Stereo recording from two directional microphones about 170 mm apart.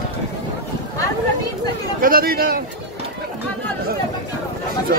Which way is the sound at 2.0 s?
60° right (ahead or behind).